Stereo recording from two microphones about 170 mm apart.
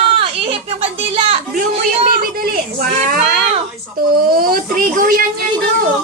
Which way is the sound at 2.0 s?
60° right (ahead or behind).